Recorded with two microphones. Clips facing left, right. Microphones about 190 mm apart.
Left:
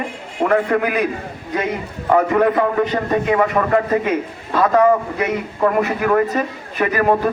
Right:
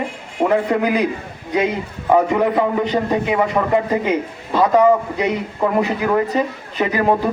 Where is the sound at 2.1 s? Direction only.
15° right (ahead or behind).